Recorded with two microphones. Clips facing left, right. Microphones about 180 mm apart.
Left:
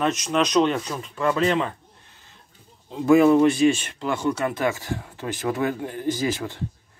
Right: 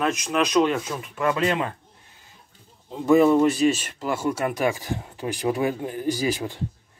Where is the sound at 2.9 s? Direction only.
Centre (ahead or behind); by 6.5 s 15° right (ahead or behind).